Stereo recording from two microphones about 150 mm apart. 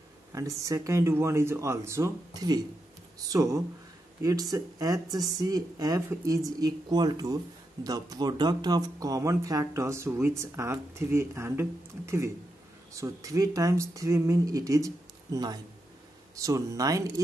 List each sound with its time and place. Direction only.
0.3 s speech: 20° right (ahead or behind)
12.9 s speech: 20° right (ahead or behind)